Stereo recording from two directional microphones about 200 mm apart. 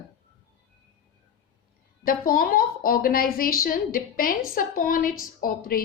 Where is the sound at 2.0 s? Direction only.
45° left (ahead or behind).